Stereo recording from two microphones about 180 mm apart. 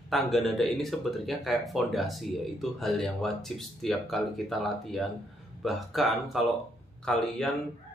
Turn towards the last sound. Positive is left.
turn(degrees=0)  # may be behind; listen again after turning